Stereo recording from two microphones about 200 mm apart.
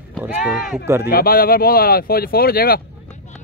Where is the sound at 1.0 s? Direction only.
50° left (ahead or behind).